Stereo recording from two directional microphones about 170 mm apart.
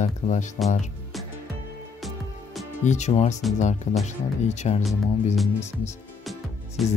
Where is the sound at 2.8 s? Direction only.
45° left (ahead or behind).